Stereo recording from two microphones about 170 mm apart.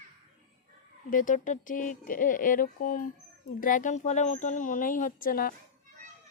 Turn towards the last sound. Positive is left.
turn(degrees=55)  # may be behind; listen again after turning